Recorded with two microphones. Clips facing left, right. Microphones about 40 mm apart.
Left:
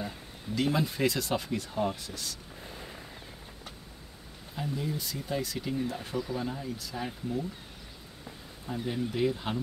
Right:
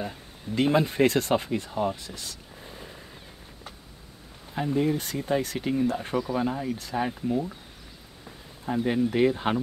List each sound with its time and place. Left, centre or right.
0.6 s speech: right
1.3 s speech: right
1.8 s speech: centre
4.6 s speech: right
8.6 s speech: right